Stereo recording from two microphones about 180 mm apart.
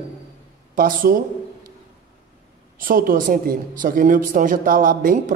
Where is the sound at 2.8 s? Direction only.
50° right (ahead or behind).